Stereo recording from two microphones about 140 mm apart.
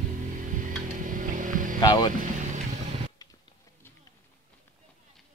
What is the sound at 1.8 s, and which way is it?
Speech, 35° left (ahead or behind).